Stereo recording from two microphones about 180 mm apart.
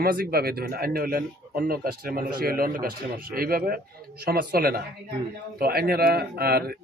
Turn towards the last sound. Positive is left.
turn(degrees=-55)  # may be behind; listen again after turning